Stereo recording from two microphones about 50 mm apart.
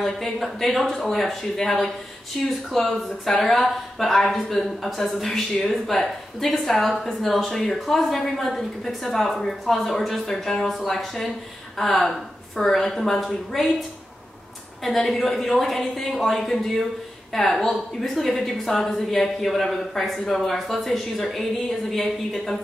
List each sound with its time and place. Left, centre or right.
0.0 s a woman's voice: centre